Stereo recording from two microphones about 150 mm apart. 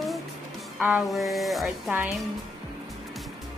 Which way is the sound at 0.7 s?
5° right (ahead or behind).